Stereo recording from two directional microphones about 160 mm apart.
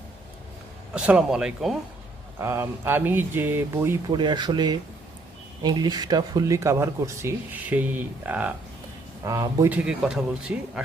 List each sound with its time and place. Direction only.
0.9 s speech: 5° right (ahead or behind)
2.4 s speech: 15° right (ahead or behind)
4.1 s speech: 30° right (ahead or behind); by 8.5 s 10° right (ahead or behind)
9.2 s speech: 20° right (ahead or behind)
9.7 s speech: 5° right (ahead or behind)